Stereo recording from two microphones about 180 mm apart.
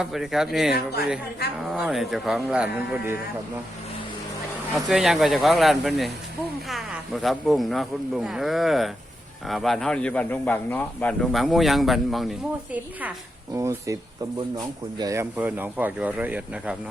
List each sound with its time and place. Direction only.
0.0 s speech: centre (ahead or behind)
4.7 s speech: centre (ahead or behind)